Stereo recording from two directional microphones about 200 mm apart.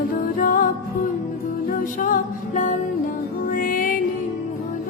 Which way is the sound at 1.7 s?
45° left (ahead or behind).